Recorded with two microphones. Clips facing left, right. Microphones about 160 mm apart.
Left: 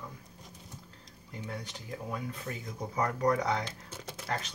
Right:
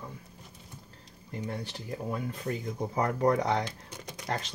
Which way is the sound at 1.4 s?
30° right (ahead or behind).